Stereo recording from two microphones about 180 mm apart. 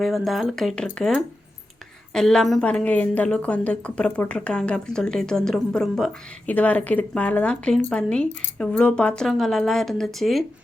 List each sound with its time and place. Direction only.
0.0 s a woman's voice: centre (ahead or behind)